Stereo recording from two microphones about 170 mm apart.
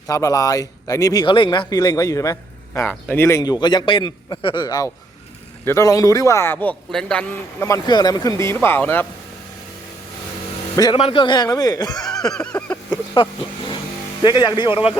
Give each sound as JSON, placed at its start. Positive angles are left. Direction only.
{"t": 0.1, "sound": "a man's voice", "side_deg": 20}
{"t": 7.6, "sound": "a man's voice", "side_deg": 20}
{"t": 10.9, "sound": "speech", "side_deg": 30}
{"t": 12.2, "sound": "a sound", "side_deg": 5}
{"t": 13.2, "sound": "speech", "side_deg": 30}